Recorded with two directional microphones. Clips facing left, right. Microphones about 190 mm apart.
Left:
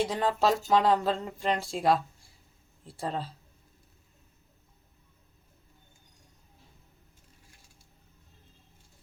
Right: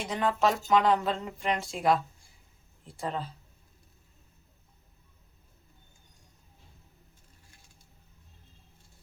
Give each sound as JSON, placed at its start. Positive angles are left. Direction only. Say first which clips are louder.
{"t": 0.0, "sound": "speech", "louder": "left 1 dB", "side_deg": 30}